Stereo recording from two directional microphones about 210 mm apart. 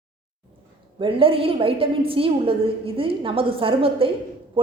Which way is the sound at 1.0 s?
25° right (ahead or behind).